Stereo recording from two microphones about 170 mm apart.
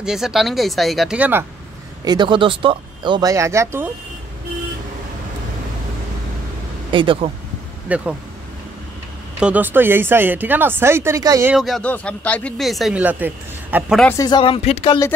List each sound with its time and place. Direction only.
0.0 s speech: 5° right (ahead or behind)
2.0 s speech: 25° right (ahead or behind)
6.9 s speech: 30° right (ahead or behind)
7.9 s speech: 5° right (ahead or behind)
9.4 s speech: 10° right (ahead or behind)
11.5 s speech: centre (ahead or behind)
14.1 s speech: 25° left (ahead or behind)